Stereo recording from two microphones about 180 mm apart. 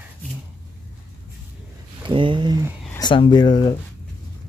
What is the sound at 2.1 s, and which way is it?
Speech, 30° right (ahead or behind).